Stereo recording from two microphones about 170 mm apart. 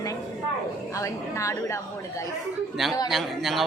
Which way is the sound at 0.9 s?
20° left (ahead or behind).